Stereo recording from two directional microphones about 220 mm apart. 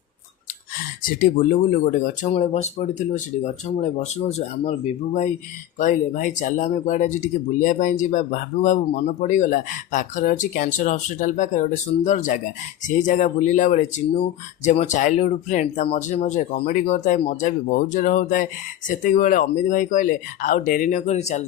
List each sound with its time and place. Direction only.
1.0 s speech: 40° left (ahead or behind)